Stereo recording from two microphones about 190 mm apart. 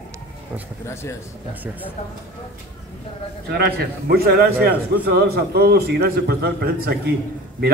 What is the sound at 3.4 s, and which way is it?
A man's voice, 60° right (ahead or behind).